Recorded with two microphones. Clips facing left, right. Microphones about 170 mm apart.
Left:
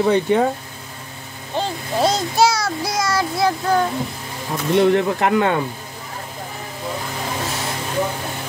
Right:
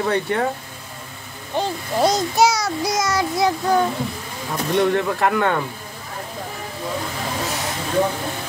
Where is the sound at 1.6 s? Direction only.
15° right (ahead or behind).